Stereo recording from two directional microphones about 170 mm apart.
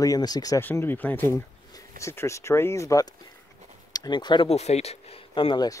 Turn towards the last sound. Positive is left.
turn(degrees=25)  # may be behind; listen again after turning